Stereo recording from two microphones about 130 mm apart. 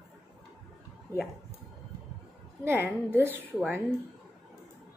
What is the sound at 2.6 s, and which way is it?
A woman's voice, 20° right (ahead or behind).